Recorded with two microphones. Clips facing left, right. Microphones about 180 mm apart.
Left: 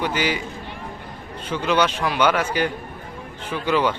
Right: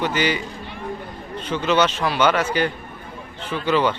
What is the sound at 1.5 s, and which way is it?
Speech, 10° left (ahead or behind).